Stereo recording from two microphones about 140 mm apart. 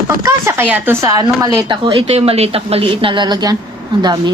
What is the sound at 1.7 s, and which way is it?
A woman's voice, 35° right (ahead or behind).